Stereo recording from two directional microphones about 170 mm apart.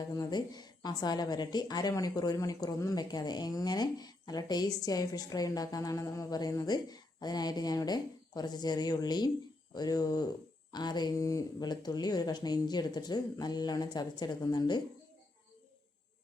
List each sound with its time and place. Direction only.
0.0 s a woman's voice: 20° left (ahead or behind)